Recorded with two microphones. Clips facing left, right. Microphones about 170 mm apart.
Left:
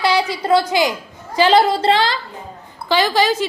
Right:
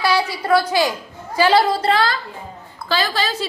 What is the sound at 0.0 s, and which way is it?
A woman's voice, 20° left (ahead or behind).